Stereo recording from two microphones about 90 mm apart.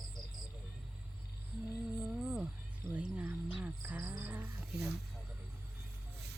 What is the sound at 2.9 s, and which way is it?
Speech, 15° right (ahead or behind).